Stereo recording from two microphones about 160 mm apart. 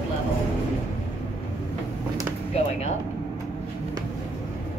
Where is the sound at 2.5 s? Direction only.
45° left (ahead or behind).